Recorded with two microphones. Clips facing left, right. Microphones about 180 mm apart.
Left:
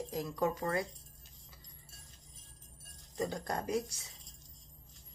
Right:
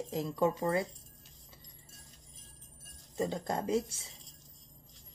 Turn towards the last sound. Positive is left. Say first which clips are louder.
# right 3 dB
turn(degrees=-25)  # may be behind; listen again after turning